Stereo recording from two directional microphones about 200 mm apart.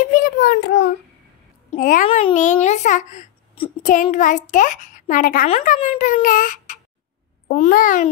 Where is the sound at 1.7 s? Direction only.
40° left (ahead or behind).